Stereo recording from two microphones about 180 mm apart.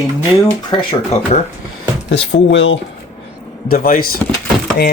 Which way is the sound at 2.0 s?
85° left.